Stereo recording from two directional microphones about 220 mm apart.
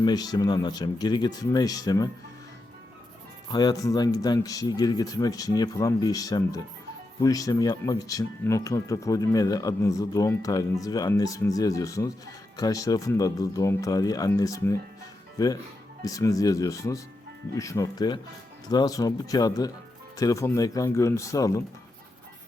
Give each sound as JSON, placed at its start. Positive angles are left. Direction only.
{"t": 0.0, "sound": "speech", "side_deg": 20}
{"t": 3.5, "sound": "speech", "side_deg": 20}